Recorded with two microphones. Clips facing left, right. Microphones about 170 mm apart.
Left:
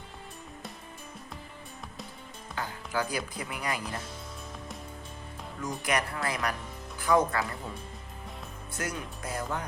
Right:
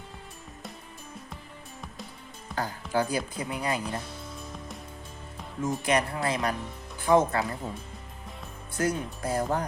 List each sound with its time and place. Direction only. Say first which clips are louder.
2.6 s speech: right 5 dB; 30° right (ahead or behind)
5.6 s speech: right 4 dB; 25° right (ahead or behind)
8.8 s speech: right 8 dB; 30° right (ahead or behind)